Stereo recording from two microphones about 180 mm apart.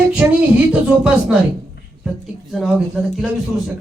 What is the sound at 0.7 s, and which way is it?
Speech, 5° right (ahead or behind).